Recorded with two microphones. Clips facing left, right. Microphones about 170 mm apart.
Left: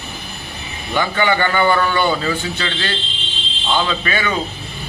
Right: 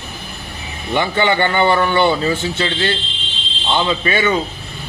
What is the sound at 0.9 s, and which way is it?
A man's voice, 25° right (ahead or behind).